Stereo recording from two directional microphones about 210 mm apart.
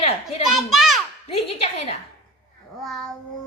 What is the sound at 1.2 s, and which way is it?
Speech, 25° left (ahead or behind).